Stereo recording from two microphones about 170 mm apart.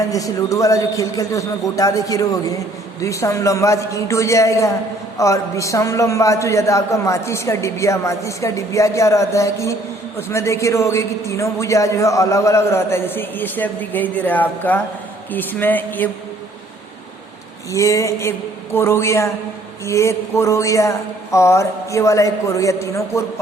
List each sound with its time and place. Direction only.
0.1 s a man's voice: 20° left (ahead or behind)
17.7 s a man's voice: 15° left (ahead or behind)